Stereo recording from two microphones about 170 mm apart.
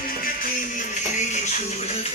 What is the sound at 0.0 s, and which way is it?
Music, 55° left (ahead or behind).